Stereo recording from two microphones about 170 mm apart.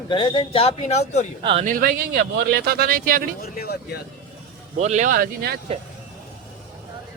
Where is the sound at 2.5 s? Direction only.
70° right (ahead or behind).